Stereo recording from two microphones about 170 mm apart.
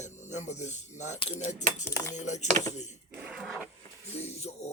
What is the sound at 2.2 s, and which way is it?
Speech, 45° left (ahead or behind).